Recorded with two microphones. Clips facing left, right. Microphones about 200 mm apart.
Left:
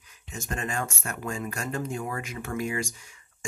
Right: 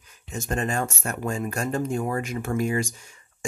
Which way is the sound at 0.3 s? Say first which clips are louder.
Right 6 dB; 40° right (ahead or behind).